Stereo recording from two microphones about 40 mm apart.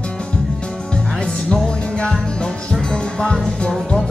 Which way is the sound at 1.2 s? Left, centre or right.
Centre.